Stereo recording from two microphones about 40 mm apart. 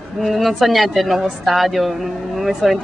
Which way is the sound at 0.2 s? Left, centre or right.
Centre.